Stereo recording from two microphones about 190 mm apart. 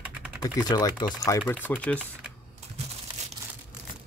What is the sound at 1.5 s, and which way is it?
Speech, 10° left (ahead or behind).